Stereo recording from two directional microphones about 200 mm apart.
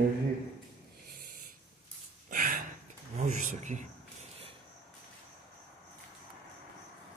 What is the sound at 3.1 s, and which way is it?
Speech, 35° right (ahead or behind).